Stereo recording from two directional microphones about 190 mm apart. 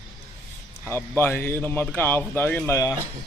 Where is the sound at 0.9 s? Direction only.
10° left (ahead or behind).